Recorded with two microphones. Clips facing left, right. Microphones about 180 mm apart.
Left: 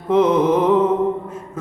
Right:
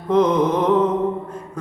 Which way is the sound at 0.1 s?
5° left (ahead or behind).